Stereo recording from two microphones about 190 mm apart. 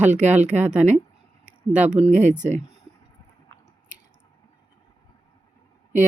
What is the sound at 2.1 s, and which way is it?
Speech, 40° right (ahead or behind).